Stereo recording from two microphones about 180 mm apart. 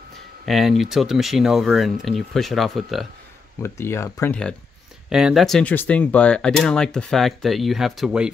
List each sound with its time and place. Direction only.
0.5 s speech: centre (ahead or behind)
3.6 s speech: 15° left (ahead or behind); by 8.3 s 5° right (ahead or behind)